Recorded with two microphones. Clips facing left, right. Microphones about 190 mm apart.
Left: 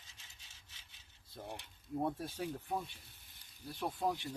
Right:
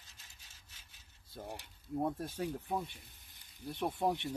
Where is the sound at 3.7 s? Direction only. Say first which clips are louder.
Right 3 dB; 20° right (ahead or behind).